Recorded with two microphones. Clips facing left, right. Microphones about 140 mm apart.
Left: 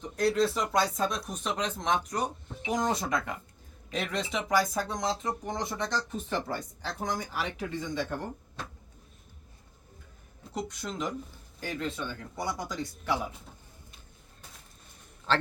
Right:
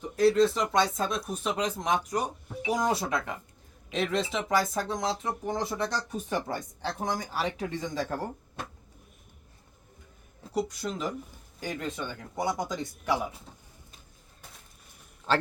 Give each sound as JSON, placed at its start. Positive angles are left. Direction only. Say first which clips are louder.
{"t": 0.2, "sound": "speech", "louder": "right 4 dB", "side_deg": 0}
{"t": 6.8, "sound": "speech", "louder": "right 3 dB", "side_deg": -30}
{"t": 10.5, "sound": "speech", "louder": "right 5 dB", "side_deg": -10}
{"t": 15.3, "sound": "a man's voice", "louder": "right 2 dB", "side_deg": -10}